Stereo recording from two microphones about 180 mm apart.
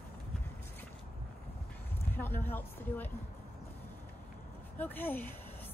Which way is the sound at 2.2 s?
10° left (ahead or behind).